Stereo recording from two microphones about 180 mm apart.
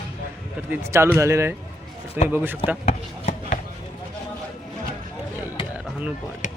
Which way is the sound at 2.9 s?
40° left (ahead or behind).